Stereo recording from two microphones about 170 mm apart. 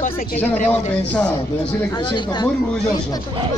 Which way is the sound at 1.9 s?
25° left (ahead or behind).